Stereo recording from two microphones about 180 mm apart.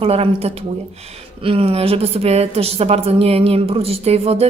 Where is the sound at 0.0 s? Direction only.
35° right (ahead or behind).